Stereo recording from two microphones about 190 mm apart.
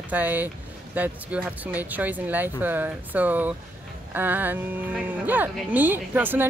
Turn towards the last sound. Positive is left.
turn(degrees=-10)  # may be behind; listen again after turning